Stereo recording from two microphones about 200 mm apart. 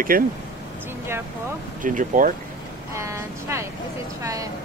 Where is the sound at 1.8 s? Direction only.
40° right (ahead or behind).